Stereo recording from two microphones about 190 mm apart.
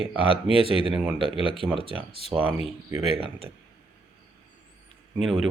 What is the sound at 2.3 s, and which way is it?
Speech, 5° right (ahead or behind).